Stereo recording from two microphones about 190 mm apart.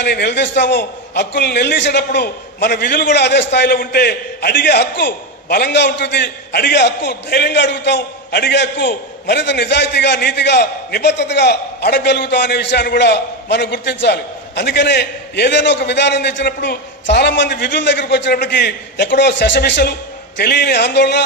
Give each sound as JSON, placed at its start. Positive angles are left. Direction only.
{"t": 0.0, "sound": "a man's voice", "side_deg": 60}